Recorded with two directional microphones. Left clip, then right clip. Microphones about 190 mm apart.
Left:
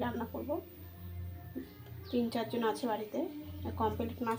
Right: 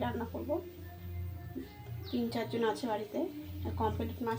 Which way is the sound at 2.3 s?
10° left (ahead or behind).